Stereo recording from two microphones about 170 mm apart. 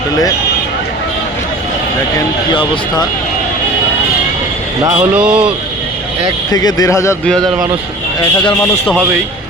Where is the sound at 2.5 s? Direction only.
30° left (ahead or behind).